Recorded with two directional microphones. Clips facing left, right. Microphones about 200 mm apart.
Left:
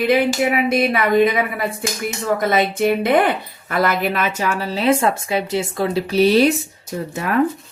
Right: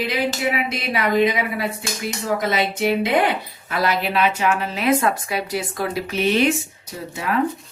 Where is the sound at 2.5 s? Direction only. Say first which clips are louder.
Left 4 dB; 50° left (ahead or behind); by 6.5 s 35° left (ahead or behind).